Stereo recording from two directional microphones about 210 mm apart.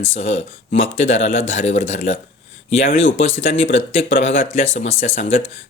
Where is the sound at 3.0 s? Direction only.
65° left (ahead or behind).